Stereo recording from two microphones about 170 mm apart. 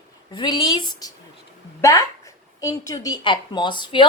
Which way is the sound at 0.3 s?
25° left (ahead or behind).